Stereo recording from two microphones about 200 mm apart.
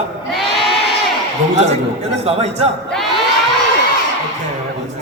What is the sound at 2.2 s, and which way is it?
Speech, 30° right (ahead or behind).